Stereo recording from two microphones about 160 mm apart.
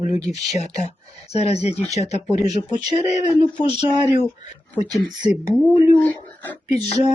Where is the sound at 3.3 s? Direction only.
30° right (ahead or behind).